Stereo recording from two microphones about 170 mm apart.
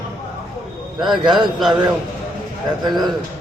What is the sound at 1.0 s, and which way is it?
Speech, centre (ahead or behind).